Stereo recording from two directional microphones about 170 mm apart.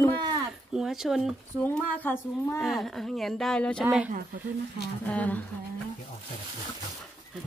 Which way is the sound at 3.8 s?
10° right (ahead or behind).